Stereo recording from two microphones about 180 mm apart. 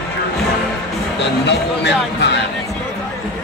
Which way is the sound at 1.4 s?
70° left (ahead or behind).